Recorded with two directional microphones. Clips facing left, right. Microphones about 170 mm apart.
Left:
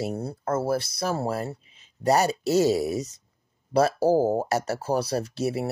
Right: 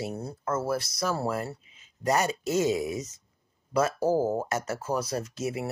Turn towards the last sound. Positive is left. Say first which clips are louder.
# left 4 dB
turn(degrees=35)  # may be behind; listen again after turning